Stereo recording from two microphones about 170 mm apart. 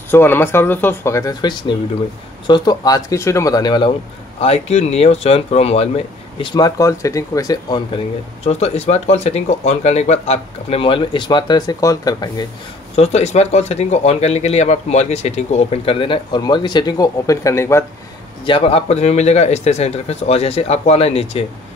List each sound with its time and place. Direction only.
0.1 s speech: 10° left (ahead or behind)
4.4 s speech: 35° left (ahead or behind)
8.5 s speech: 40° left (ahead or behind); by 12.4 s 25° left (ahead or behind)
12.9 s speech: 40° left (ahead or behind); by 17.8 s 15° left (ahead or behind)
18.4 s speech: 35° left (ahead or behind)